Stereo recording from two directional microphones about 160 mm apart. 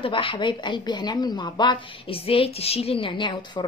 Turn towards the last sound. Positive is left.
turn(degrees=30)  # may be behind; listen again after turning